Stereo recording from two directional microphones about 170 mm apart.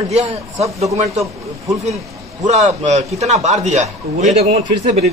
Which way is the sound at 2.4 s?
45° right (ahead or behind).